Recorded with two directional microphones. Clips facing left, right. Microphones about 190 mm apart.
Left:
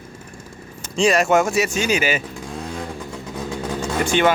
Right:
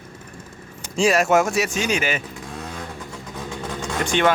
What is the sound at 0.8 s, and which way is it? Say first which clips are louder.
Speech: left 1 dB; 5° right (ahead or behind).